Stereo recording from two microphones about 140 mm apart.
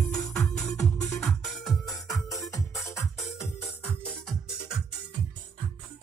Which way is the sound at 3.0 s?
20° left (ahead or behind).